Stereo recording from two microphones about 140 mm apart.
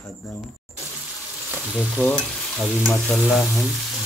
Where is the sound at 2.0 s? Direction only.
5° left (ahead or behind).